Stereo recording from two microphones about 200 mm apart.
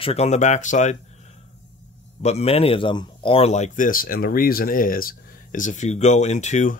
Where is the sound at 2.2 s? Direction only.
30° left (ahead or behind).